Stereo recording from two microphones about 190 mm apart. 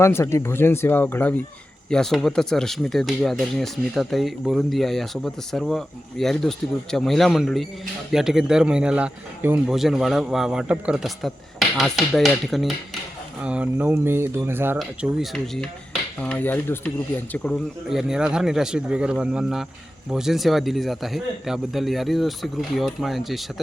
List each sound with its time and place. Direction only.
0.0 s a man's voice: 15° left (ahead or behind); by 14.8 s 10° right (ahead or behind)
14.8 s a man's voice: centre (ahead or behind)